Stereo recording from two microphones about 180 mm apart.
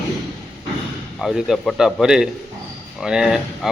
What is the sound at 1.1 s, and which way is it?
Speech, centre (ahead or behind).